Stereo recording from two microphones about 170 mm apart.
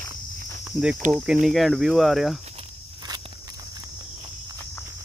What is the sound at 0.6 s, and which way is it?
Cricket, 5° right (ahead or behind).